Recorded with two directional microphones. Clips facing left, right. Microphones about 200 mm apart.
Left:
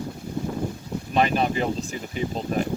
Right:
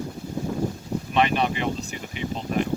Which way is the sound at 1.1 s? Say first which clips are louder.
Left 1 dB; 40° left (ahead or behind).